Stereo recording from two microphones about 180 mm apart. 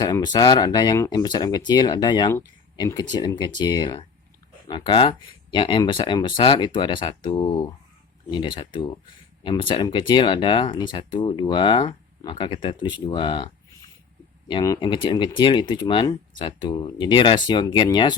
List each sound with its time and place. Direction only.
0.0 s speech: 25° left (ahead or behind)